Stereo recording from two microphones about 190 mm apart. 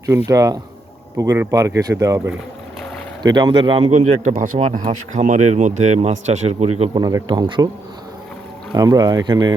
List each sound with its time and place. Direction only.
0.3 s a man's voice: 15° right (ahead or behind); by 7.0 s 35° right (ahead or behind)
7.0 s speech: 20° right (ahead or behind)
8.7 s speech: 20° right (ahead or behind)